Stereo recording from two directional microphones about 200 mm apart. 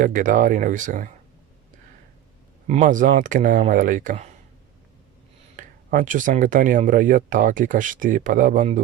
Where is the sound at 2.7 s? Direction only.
40° right (ahead or behind).